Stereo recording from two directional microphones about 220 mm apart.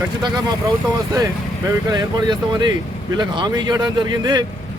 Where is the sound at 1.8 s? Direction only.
20° right (ahead or behind).